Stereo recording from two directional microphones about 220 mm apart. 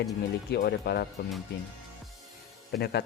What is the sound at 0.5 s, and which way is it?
Speech, 45° left (ahead or behind).